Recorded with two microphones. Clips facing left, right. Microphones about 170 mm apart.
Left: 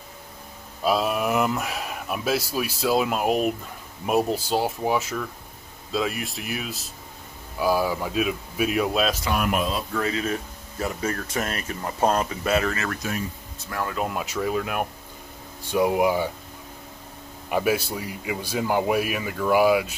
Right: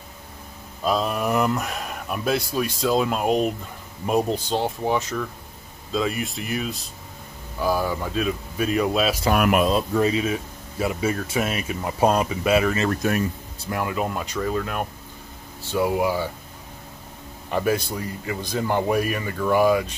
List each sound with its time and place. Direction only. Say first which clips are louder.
0.8 s speech: even; 5° left (ahead or behind)
9.3 s speech: right 5 dB; 70° right (ahead or behind)
9.9 s speech: right 5 dB; 15° right (ahead or behind)
12.7 s speech: right 6 dB; 25° right (ahead or behind)
13.9 s speech: right 1 dB; 5° left (ahead or behind)
17.5 s speech: even; 10° left (ahead or behind)